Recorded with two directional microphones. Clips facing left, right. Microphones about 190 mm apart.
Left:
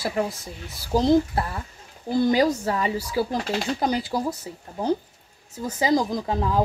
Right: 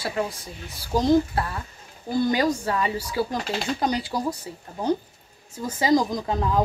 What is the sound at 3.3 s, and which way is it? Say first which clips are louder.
Speech: left 2 dB; 5° left (ahead or behind).